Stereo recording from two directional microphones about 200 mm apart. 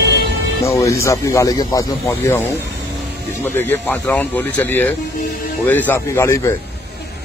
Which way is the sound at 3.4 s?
10° left (ahead or behind).